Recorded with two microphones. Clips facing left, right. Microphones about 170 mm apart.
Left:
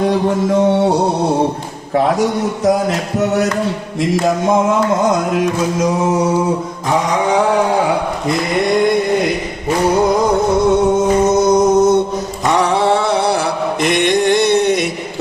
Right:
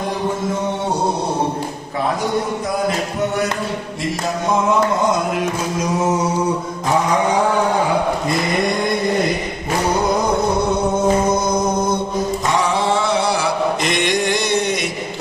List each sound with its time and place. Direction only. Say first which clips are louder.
11.5 s mantra: left 8 dB; 85° left
12.5 s a sound: left 7 dB; 60° left (ahead or behind)
13.8 s mantra: left 5 dB; 60° left (ahead or behind)